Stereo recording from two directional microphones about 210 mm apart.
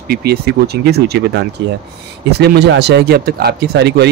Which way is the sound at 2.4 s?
50° right (ahead or behind).